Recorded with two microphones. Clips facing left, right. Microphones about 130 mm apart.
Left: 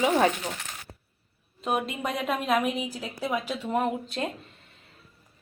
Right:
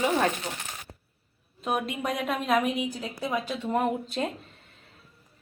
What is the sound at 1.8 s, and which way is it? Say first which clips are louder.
A woman's voice: even; centre (ahead or behind).